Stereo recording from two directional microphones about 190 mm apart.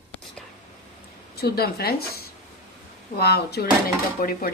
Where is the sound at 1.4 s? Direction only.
55° left (ahead or behind).